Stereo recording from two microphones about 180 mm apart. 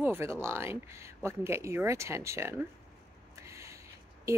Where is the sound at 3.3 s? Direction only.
15° right (ahead or behind).